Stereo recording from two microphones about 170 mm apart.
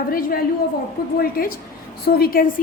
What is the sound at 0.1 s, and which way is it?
A woman's voice, 60° left (ahead or behind).